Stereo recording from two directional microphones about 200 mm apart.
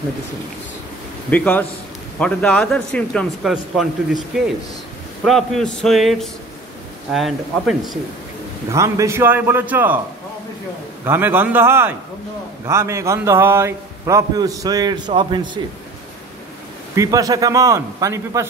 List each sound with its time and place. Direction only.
1.3 s a man's voice: 10° left (ahead or behind)
5.2 s a man's voice: centre (ahead or behind)
8.7 s a man's voice: 15° right (ahead or behind)
11.1 s a man's voice: 10° right (ahead or behind)
16.9 s a man's voice: 15° right (ahead or behind)